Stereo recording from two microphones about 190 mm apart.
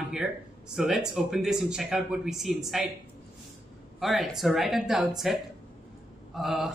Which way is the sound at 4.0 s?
Centre (ahead or behind).